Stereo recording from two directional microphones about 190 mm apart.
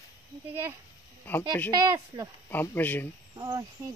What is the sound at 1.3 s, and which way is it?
Speech, 10° left (ahead or behind).